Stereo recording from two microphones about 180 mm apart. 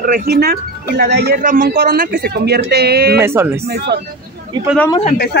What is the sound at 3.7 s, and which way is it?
Speech, 65° right (ahead or behind).